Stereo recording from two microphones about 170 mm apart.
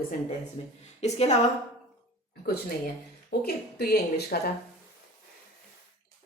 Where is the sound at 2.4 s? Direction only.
60° left (ahead or behind).